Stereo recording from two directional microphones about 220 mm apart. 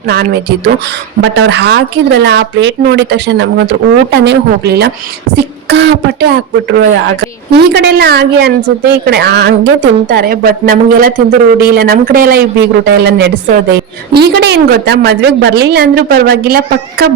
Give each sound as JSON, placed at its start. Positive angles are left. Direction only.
{"t": 0.1, "sound": "a woman's voice", "side_deg": -45}